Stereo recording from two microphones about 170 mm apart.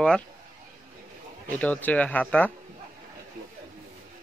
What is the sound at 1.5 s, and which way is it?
Speech, 10° left (ahead or behind).